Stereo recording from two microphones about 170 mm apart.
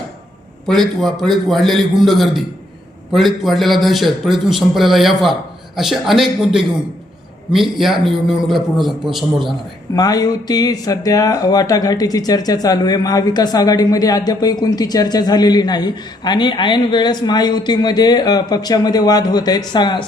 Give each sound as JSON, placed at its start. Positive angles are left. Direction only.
{"t": 0.7, "sound": "a man's voice", "side_deg": 0}
{"t": 9.9, "sound": "speech", "side_deg": 20}